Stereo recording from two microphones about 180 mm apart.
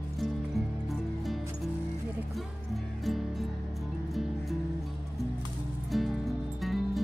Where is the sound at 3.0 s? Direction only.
Centre (ahead or behind).